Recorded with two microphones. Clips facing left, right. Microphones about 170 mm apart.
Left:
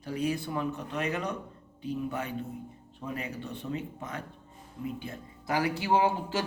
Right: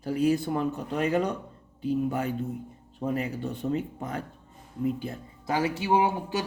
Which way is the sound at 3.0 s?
40° right (ahead or behind).